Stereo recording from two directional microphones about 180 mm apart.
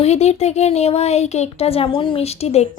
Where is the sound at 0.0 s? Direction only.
35° left (ahead or behind).